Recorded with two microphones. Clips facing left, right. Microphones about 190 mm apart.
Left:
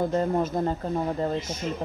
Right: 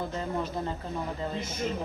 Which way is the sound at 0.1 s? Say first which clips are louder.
Left 8 dB; 45° left (ahead or behind).